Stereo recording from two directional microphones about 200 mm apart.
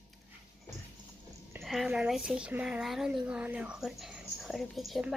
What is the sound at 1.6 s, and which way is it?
A woman's voice, centre (ahead or behind).